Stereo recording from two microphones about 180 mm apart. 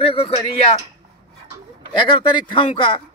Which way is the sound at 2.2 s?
25° left (ahead or behind).